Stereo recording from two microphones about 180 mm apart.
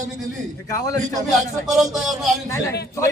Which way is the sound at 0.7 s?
20° left (ahead or behind).